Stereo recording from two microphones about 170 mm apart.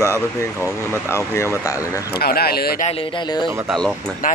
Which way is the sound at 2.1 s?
65° left (ahead or behind).